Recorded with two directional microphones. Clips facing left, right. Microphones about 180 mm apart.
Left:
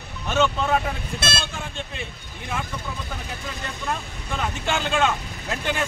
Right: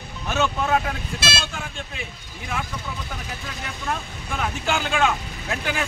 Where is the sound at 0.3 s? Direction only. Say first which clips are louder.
Left 1 dB; 5° right (ahead or behind).